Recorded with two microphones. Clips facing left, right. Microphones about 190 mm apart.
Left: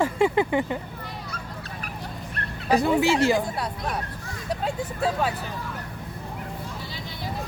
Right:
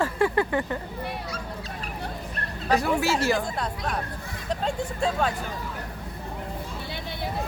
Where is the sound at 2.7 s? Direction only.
15° left (ahead or behind).